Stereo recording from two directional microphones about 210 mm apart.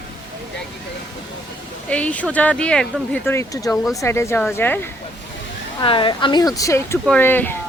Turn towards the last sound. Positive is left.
turn(degrees=10)  # may be behind; listen again after turning